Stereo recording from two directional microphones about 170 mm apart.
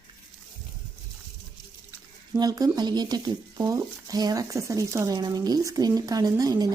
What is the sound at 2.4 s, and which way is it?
Speech, 20° right (ahead or behind).